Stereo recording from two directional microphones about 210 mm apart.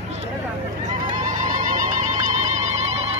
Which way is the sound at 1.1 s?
35° right (ahead or behind).